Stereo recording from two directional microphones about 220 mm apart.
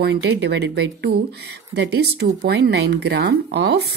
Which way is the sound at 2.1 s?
50° right (ahead or behind).